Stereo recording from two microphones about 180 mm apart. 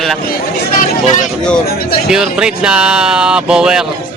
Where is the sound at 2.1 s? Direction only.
5° right (ahead or behind).